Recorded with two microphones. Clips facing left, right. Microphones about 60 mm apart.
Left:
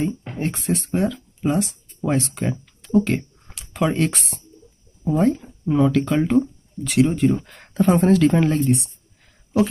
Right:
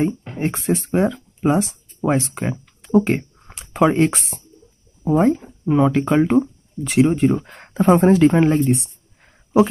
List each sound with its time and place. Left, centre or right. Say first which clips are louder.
0.3 s a woman's voice: right 3 dB; right